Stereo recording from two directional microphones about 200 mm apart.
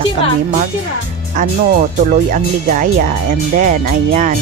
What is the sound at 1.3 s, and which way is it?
Speech, 40° right (ahead or behind).